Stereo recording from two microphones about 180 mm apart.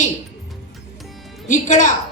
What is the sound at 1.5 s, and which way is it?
Speech, 45° left (ahead or behind).